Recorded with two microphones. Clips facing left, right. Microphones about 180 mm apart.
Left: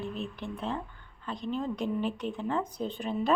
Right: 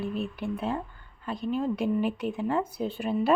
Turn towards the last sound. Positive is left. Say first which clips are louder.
# right 4 dB
turn(degrees=-10)  # may be behind; listen again after turning